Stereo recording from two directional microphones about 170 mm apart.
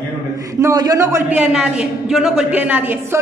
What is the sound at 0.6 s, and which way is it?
A man's voice, 20° right (ahead or behind).